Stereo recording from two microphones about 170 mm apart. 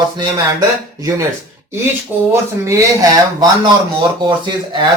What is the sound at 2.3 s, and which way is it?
Speech, 15° right (ahead or behind).